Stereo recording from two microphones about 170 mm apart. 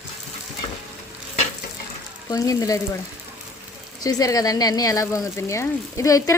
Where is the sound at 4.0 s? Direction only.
20° left (ahead or behind).